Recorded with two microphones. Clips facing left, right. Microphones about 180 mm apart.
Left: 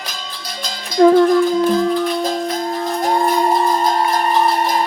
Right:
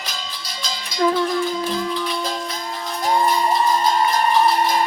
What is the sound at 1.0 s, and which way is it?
Music, 50° left (ahead or behind).